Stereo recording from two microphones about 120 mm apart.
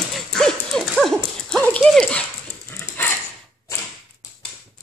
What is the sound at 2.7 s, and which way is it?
Dog, 15° left (ahead or behind).